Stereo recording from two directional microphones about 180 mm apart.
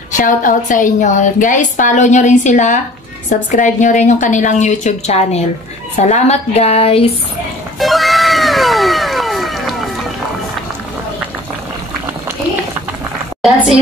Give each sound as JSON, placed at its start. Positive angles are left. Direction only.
{"t": 0.1, "sound": "a woman's voice", "side_deg": 45}
{"t": 7.8, "sound": "cat", "side_deg": 0}
{"t": 13.4, "sound": "a woman's voice", "side_deg": 0}